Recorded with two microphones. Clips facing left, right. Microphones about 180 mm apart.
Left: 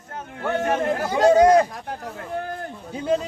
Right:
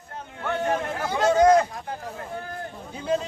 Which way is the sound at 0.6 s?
70° left (ahead or behind).